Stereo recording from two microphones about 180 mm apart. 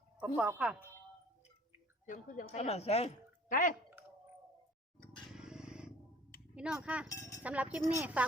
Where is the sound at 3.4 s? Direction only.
50° left (ahead or behind).